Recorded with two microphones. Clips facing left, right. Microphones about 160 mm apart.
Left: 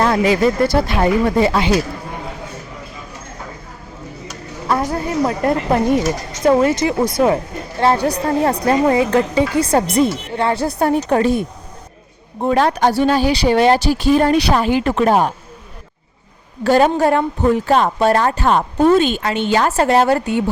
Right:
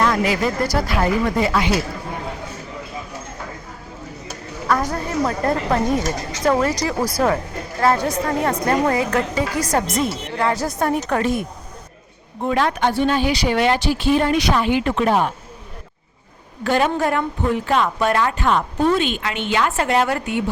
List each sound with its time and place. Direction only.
0.0 s speech: 30° left (ahead or behind)
4.7 s a woman's voice: 25° left (ahead or behind); by 15.3 s 40° left (ahead or behind)
16.6 s a woman's voice: 35° left (ahead or behind)